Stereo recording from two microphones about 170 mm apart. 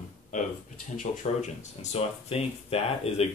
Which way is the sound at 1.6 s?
40° left (ahead or behind).